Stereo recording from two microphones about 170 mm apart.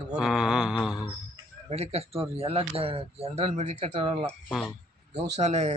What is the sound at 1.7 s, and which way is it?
A man's voice, 35° right (ahead or behind).